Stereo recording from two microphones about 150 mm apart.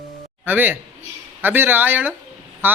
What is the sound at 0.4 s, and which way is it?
Speech, 15° right (ahead or behind).